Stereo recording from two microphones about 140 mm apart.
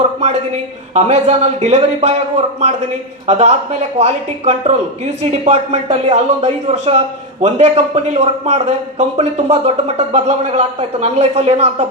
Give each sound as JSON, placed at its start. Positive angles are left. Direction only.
{"t": 0.9, "sound": "a man's voice", "side_deg": -50}
{"t": 3.2, "sound": "a man's voice", "side_deg": -55}